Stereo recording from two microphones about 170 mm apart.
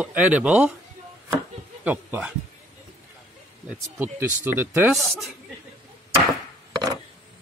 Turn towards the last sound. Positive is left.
turn(degrees=-25)  # may be behind; listen again after turning